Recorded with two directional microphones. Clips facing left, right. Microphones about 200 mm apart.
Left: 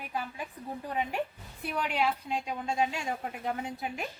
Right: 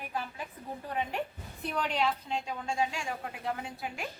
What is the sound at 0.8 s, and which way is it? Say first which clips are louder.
A woman's voice: left 2 dB; 15° left (ahead or behind).